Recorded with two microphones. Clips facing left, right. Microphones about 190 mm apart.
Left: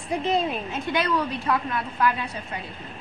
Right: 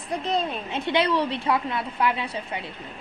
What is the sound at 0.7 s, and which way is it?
A woman's voice, 25° right (ahead or behind).